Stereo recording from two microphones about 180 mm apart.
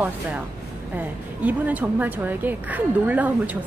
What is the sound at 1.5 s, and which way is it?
A woman's voice, 10° right (ahead or behind).